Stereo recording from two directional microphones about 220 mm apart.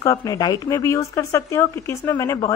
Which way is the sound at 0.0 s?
15° left (ahead or behind).